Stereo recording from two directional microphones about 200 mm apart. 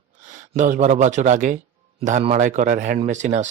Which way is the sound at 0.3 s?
35° right (ahead or behind).